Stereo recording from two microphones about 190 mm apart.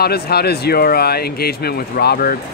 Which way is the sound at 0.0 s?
55° left (ahead or behind).